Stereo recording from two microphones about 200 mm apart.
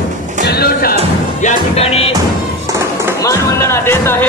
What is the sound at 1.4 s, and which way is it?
Music, 30° left (ahead or behind).